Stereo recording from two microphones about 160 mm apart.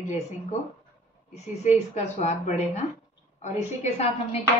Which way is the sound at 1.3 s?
45° left (ahead or behind).